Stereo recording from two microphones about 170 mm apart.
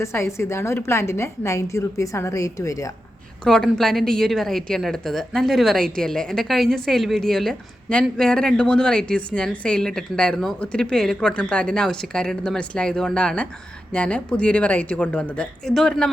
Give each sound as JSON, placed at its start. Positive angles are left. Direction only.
{"t": 0.0, "sound": "a woman's voice", "side_deg": 15}
{"t": 3.4, "sound": "a woman's voice", "side_deg": 5}